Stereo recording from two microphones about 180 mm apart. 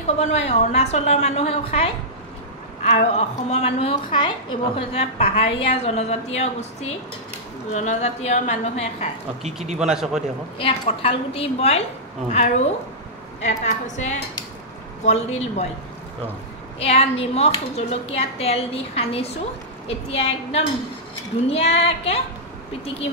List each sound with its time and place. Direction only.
0.2 s a woman's voice: 35° left (ahead or behind)
2.9 s a woman's voice: 35° left (ahead or behind)
9.8 s a man's voice: 5° right (ahead or behind)
10.6 s a woman's voice: 30° left (ahead or behind)
16.8 s a woman's voice: 35° left (ahead or behind)